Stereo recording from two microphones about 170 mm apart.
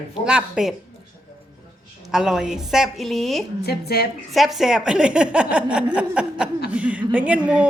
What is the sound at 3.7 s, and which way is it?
Speech, 70° left (ahead or behind).